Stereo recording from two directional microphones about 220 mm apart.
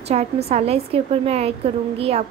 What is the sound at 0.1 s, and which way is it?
Speech, 30° right (ahead or behind).